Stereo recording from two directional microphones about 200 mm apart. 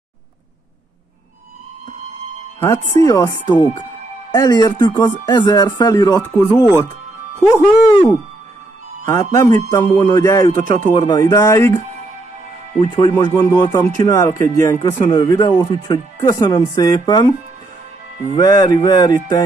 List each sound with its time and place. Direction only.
2.6 s speech: 15° left (ahead or behind)
10.5 s speech: 45° right (ahead or behind)
10.9 s speech: 20° left (ahead or behind)
13.2 s speech: 15° left (ahead or behind)
18.4 s speech: 20° left (ahead or behind)